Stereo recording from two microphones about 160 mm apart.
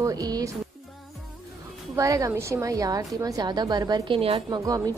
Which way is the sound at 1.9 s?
20° right (ahead or behind).